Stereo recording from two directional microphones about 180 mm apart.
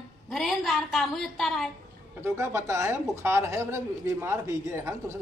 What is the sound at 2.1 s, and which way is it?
Speech, 15° right (ahead or behind).